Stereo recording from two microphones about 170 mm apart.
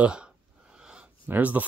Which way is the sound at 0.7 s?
5° right (ahead or behind).